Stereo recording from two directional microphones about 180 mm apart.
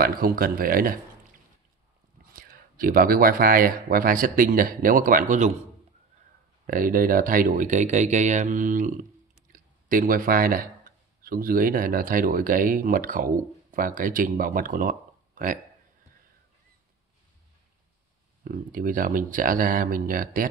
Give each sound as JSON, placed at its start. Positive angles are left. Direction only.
{"t": 0.0, "sound": "speech", "side_deg": -55}
{"t": 2.2, "sound": "speech", "side_deg": -55}
{"t": 6.6, "sound": "speech", "side_deg": -50}
{"t": 18.4, "sound": "speech", "side_deg": -50}